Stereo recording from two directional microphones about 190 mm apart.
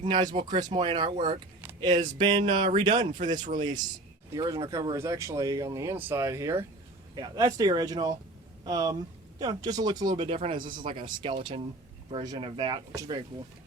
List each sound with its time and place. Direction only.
0.0 s speech: 25° right (ahead or behind)